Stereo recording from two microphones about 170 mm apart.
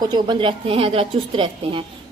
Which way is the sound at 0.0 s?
25° right (ahead or behind).